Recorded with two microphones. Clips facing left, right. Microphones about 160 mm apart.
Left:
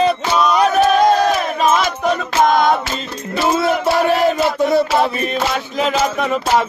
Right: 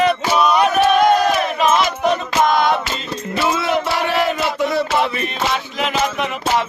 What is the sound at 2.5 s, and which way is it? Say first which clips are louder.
Music: left 3 dB; 45° left (ahead or behind).